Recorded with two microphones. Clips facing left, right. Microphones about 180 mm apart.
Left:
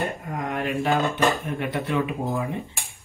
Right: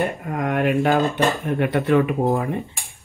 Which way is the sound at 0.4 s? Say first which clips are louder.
Right 7 dB; 50° right (ahead or behind).